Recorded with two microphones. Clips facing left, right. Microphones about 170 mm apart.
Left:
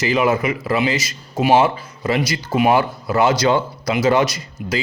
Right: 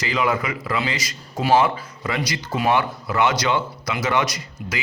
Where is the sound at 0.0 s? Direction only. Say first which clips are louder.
Left 5 dB; 25° left (ahead or behind).